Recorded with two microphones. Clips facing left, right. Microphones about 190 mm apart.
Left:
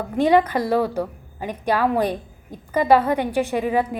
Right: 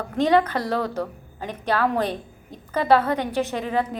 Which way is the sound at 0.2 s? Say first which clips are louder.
Left 2 dB; 10° left (ahead or behind).